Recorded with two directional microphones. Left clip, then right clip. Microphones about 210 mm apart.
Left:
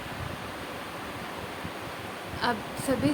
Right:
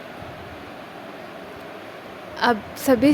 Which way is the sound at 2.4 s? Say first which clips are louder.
Right 9 dB; 35° right (ahead or behind).